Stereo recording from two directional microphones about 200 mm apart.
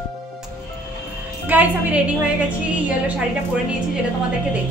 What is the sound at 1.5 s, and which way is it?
Speech, 10° right (ahead or behind).